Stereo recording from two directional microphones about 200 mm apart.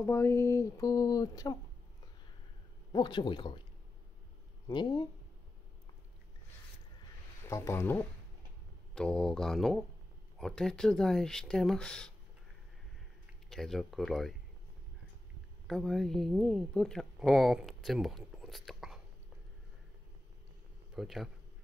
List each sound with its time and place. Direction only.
0.0 s speech: 10° left (ahead or behind)
2.9 s speech: 20° left (ahead or behind)
4.6 s speech: 20° left (ahead or behind)
7.4 s speech: 15° left (ahead or behind)
13.5 s speech: centre (ahead or behind)
15.6 s speech: centre (ahead or behind)
20.9 s speech: centre (ahead or behind)